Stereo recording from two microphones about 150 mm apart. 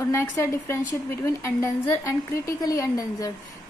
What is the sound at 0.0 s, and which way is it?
A woman's voice, 20° left (ahead or behind).